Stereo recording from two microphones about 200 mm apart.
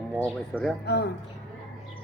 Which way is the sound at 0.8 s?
55° left (ahead or behind).